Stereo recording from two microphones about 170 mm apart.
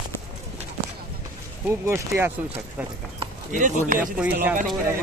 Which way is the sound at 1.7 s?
15° right (ahead or behind).